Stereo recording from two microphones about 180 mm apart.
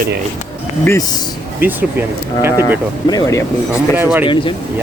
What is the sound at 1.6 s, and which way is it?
Speech, 10° right (ahead or behind).